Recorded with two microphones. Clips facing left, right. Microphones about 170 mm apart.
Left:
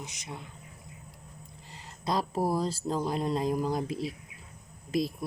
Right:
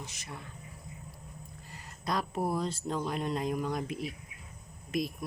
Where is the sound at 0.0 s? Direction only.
20° left (ahead or behind).